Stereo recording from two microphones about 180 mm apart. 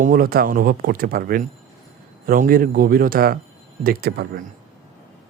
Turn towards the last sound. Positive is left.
turn(degrees=-55)  # may be behind; listen again after turning